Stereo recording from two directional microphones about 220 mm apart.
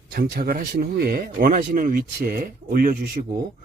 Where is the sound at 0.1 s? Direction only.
45° right (ahead or behind).